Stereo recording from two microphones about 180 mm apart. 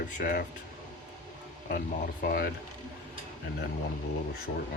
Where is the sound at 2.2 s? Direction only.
60° left (ahead or behind).